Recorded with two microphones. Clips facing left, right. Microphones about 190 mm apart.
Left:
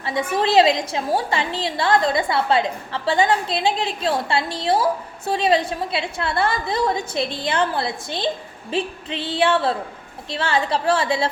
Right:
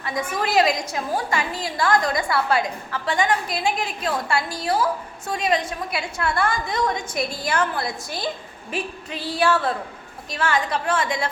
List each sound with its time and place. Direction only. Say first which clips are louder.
0.0 s a woman's voice: left 4 dB; 30° left (ahead or behind)